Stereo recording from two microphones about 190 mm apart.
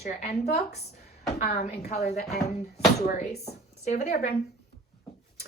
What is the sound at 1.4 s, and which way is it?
Speech, 35° left (ahead or behind).